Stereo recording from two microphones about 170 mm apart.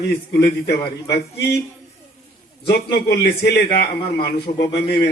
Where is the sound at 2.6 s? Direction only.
75° left (ahead or behind).